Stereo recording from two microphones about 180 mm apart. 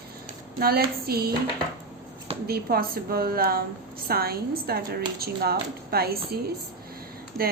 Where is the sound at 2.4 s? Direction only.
60° right (ahead or behind).